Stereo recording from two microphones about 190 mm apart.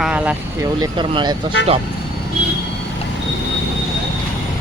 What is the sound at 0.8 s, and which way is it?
Speech, 25° right (ahead or behind).